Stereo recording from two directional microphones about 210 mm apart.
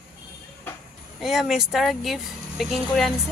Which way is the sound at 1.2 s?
Centre (ahead or behind).